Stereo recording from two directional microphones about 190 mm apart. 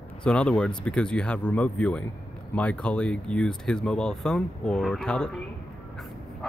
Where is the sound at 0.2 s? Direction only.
5° left (ahead or behind).